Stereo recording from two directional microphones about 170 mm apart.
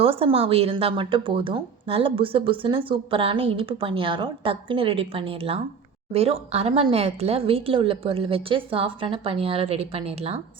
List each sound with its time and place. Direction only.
0.0 s speech: 35° right (ahead or behind)